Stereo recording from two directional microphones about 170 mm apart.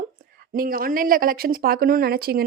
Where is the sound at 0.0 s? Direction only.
60° right (ahead or behind).